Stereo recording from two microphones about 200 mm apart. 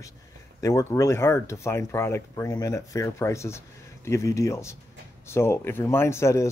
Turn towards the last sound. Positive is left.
turn(degrees=15)  # may be behind; listen again after turning